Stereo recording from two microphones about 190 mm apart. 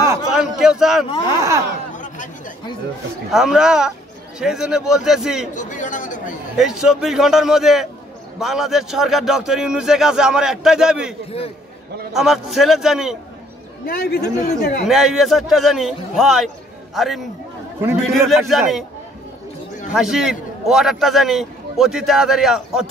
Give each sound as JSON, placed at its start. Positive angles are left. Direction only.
{"t": 0.3, "sound": "a man's voice", "side_deg": -5}
{"t": 2.0, "sound": "chatter", "side_deg": 40}
{"t": 3.3, "sound": "a man's voice", "side_deg": -5}
{"t": 5.5, "sound": "chatter", "side_deg": 40}
{"t": 6.5, "sound": "a man's voice", "side_deg": -5}
{"t": 13.8, "sound": "speech", "side_deg": 55}
{"t": 14.9, "sound": "a man's voice", "side_deg": 0}
{"t": 19.9, "sound": "a man's voice", "side_deg": 0}